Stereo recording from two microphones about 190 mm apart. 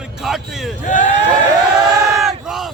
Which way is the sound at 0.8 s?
40° left (ahead or behind).